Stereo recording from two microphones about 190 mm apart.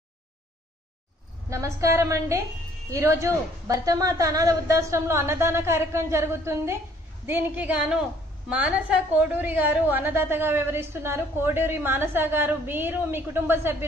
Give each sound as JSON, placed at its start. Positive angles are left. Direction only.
{"t": 1.5, "sound": "a woman's voice", "side_deg": -15}